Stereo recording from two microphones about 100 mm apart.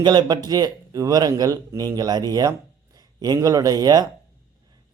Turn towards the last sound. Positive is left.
turn(degrees=-40)  # may be behind; listen again after turning